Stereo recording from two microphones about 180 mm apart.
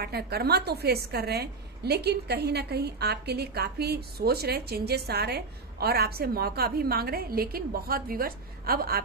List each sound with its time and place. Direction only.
0.0 s a woman's voice: 60° right (ahead or behind)